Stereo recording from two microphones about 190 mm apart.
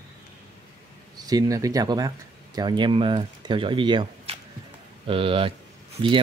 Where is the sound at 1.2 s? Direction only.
20° right (ahead or behind).